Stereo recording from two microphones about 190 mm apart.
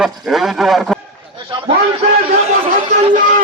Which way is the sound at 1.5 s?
25° right (ahead or behind).